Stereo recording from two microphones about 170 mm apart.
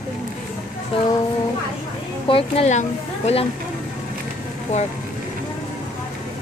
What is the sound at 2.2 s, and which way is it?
Speech, 35° left (ahead or behind).